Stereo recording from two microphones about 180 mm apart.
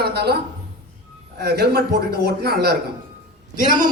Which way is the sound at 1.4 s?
60° right (ahead or behind).